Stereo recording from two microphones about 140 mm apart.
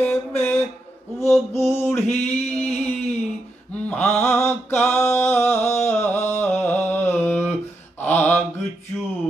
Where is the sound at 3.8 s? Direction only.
15° left (ahead or behind).